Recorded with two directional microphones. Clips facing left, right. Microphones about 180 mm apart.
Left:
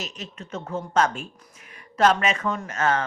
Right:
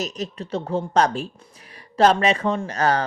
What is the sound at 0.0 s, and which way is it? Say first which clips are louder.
A woman's voice: right 8 dB; 40° right (ahead or behind).